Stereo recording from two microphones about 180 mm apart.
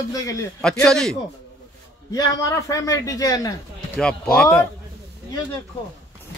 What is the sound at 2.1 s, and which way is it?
Speech, 20° left (ahead or behind).